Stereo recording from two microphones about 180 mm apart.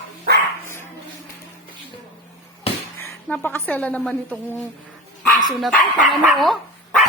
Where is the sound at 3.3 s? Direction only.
10° left (ahead or behind).